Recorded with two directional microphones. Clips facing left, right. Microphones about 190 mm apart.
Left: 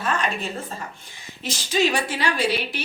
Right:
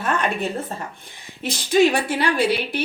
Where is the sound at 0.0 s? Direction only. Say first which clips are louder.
Right 3 dB; 55° right (ahead or behind).